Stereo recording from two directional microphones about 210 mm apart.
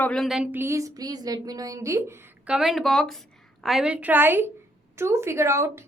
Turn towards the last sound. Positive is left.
turn(degrees=-15)  # may be behind; listen again after turning